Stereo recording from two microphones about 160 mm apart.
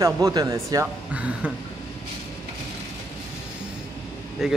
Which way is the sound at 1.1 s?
10° right (ahead or behind).